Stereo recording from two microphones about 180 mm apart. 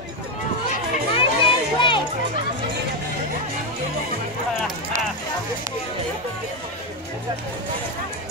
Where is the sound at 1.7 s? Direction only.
25° left (ahead or behind).